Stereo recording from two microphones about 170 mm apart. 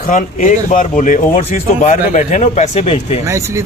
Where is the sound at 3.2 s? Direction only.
15° right (ahead or behind).